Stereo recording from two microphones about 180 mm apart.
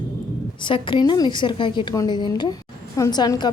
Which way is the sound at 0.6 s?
25° left (ahead or behind).